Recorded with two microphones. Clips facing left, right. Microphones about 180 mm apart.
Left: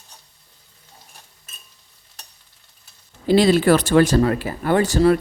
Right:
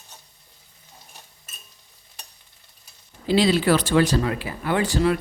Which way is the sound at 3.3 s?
50° left (ahead or behind).